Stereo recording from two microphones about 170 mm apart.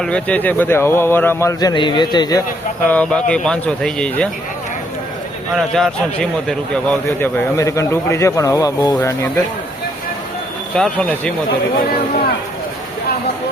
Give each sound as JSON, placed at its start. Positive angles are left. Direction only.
{"t": 0.0, "sound": "a man's voice", "side_deg": 5}
{"t": 2.8, "sound": "speech", "side_deg": 10}
{"t": 5.5, "sound": "a man's voice", "side_deg": 5}
{"t": 10.8, "sound": "speech", "side_deg": 5}